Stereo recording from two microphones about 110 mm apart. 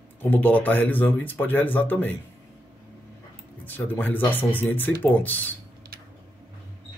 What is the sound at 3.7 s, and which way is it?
Speech, 15° left (ahead or behind).